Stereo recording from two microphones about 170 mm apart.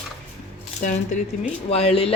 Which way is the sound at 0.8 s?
45° left (ahead or behind).